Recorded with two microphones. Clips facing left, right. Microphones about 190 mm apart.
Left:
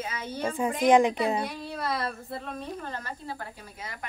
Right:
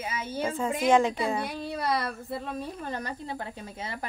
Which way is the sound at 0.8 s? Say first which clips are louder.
Left 2 dB; 15° left (ahead or behind).